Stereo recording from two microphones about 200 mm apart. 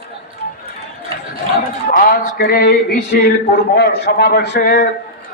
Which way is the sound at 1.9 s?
45° left (ahead or behind).